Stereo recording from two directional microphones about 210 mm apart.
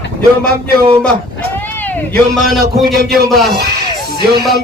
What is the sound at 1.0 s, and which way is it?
A man's voice, 5° left (ahead or behind).